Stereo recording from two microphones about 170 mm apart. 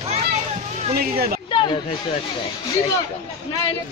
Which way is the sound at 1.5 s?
30° left (ahead or behind).